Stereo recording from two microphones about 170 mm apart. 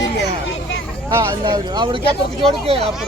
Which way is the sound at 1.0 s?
25° right (ahead or behind).